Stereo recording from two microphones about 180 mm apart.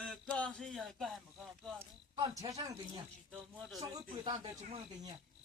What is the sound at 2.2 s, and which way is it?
Speech, 20° right (ahead or behind).